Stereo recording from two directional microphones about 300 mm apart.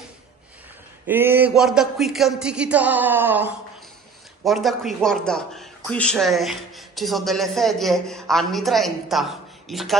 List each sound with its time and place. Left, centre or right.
1.0 s speech: centre